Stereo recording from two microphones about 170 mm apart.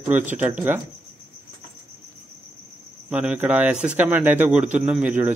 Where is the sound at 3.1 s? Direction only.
10° right (ahead or behind).